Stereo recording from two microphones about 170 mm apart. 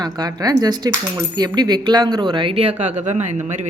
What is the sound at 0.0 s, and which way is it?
Speech, 25° right (ahead or behind).